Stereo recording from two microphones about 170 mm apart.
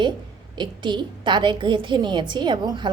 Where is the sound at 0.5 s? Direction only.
25° right (ahead or behind).